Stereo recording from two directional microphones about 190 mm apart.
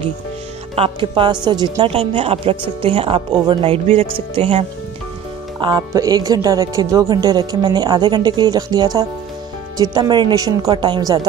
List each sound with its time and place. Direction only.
0.7 s a woman's voice: 30° right (ahead or behind)